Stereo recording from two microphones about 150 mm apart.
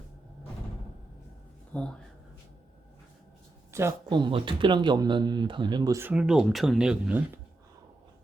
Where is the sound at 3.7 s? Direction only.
20° right (ahead or behind).